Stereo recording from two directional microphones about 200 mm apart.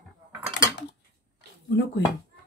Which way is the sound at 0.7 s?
60° left (ahead or behind).